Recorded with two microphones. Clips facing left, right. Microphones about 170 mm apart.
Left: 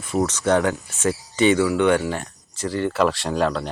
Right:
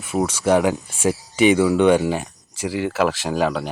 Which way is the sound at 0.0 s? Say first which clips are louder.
Right 1 dB; 10° right (ahead or behind).